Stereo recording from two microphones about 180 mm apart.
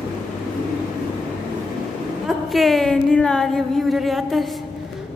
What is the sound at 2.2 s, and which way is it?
A woman's voice, centre (ahead or behind).